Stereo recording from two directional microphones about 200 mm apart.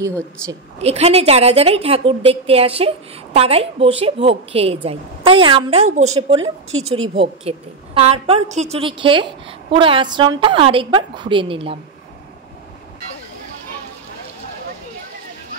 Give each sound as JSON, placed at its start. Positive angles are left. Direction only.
{"t": 0.7, "sound": "a woman's voice", "side_deg": -30}